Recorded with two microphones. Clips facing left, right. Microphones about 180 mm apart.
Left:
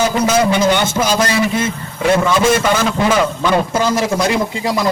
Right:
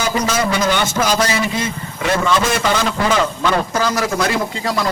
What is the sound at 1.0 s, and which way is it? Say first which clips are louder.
Speech: left 2 dB; 10° left (ahead or behind).